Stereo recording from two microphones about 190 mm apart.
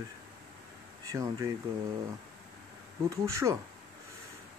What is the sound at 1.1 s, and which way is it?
Speech, 15° right (ahead or behind).